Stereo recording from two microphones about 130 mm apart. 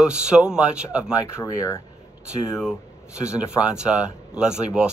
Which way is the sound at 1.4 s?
25° left (ahead or behind).